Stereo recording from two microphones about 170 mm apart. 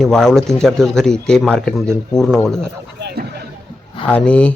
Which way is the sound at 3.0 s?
80° right.